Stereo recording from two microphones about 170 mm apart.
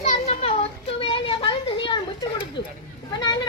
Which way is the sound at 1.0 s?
30° left (ahead or behind).